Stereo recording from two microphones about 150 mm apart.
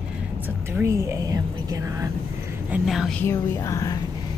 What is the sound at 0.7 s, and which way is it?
Speech, 20° right (ahead or behind).